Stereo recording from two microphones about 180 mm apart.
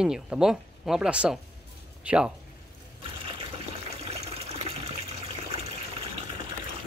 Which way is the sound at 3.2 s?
30° right (ahead or behind).